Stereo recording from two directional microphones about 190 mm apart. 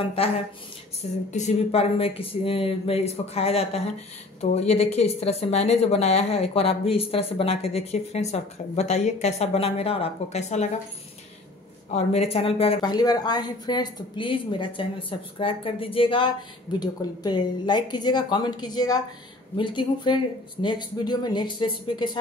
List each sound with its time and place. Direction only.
0.0 s speech: 30° left (ahead or behind)
1.3 s speech: 35° left (ahead or behind)
11.9 s speech: 35° left (ahead or behind)